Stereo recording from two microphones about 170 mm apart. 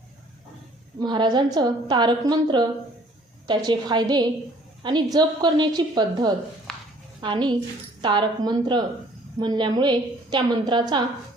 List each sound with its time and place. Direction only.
0.9 s a woman's voice: 25° right (ahead or behind)
6.7 s a sound: 5° left (ahead or behind)
7.2 s a woman's voice: 25° right (ahead or behind)